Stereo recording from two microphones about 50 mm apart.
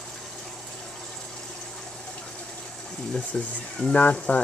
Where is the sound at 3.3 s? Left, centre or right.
Left.